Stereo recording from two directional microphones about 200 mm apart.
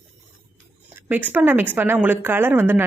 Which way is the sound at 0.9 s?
10° right (ahead or behind).